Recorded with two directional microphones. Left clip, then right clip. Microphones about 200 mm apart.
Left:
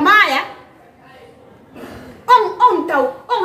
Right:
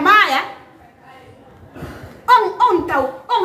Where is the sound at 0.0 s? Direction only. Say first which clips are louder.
Left 1 dB; 5° right (ahead or behind).